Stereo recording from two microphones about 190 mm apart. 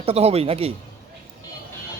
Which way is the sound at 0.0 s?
30° right (ahead or behind).